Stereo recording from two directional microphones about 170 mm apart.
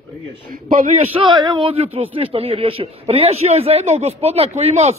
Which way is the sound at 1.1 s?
30° right (ahead or behind).